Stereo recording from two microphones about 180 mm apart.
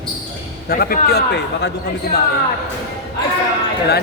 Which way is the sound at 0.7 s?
55° left (ahead or behind).